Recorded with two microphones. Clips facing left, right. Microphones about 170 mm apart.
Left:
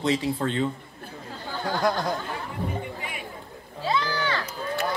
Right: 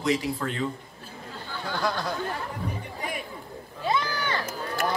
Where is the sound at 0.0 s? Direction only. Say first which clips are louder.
Left 2 dB; 30° left (ahead or behind).